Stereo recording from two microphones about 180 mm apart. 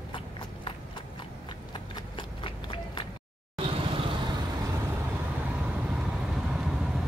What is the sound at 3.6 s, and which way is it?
Vehicle, 30° right (ahead or behind).